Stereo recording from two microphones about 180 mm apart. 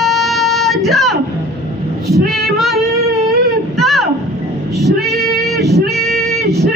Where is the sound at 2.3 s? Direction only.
Centre (ahead or behind).